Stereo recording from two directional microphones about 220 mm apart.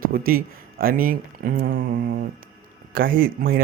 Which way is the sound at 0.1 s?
40° right (ahead or behind).